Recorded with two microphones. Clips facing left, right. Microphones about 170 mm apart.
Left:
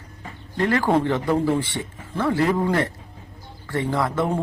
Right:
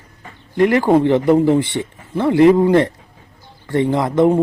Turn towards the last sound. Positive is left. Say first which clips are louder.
# right 8 dB
turn(degrees=-25)  # may be behind; listen again after turning